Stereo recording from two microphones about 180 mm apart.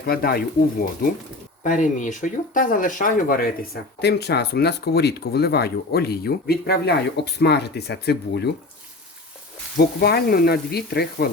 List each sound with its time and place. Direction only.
0.0 s speech: 60° left (ahead or behind)
1.6 s speech: 45° left (ahead or behind); by 8.4 s 65° left (ahead or behind)
9.7 s speech: 60° left (ahead or behind)